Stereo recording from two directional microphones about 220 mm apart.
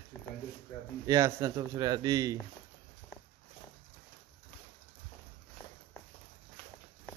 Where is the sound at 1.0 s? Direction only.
15° right (ahead or behind).